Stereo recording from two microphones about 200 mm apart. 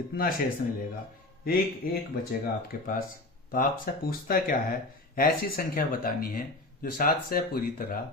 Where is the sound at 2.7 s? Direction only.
45° left (ahead or behind).